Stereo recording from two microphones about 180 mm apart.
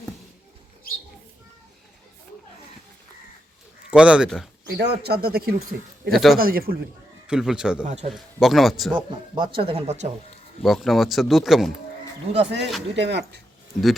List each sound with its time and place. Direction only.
3.9 s speech: 5° right (ahead or behind)
4.8 s speech: 65° right (ahead or behind)
6.1 s speech: centre (ahead or behind)
6.4 s speech: 55° right (ahead or behind)
7.3 s speech: 5° right (ahead or behind)
7.9 s a man's voice: 35° right (ahead or behind)
8.1 s speech: centre (ahead or behind)
9.0 s speech: 25° right (ahead or behind)
10.6 s speech: centre (ahead or behind)
12.4 s speech: 80° right